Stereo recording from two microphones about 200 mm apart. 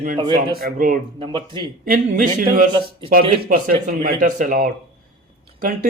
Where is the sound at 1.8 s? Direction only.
45° right (ahead or behind).